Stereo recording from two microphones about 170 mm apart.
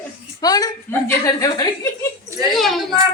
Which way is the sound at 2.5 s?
Centre (ahead or behind).